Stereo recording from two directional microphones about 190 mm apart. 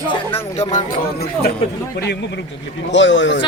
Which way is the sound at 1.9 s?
60° left (ahead or behind).